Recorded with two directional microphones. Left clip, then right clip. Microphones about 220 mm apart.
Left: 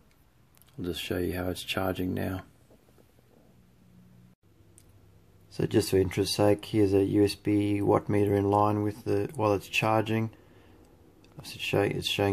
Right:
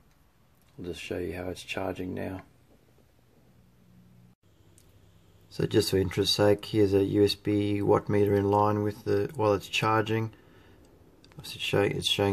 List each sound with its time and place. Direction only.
0.8 s speech: 35° left (ahead or behind)
5.5 s speech: 5° left (ahead or behind)
11.4 s speech: centre (ahead or behind)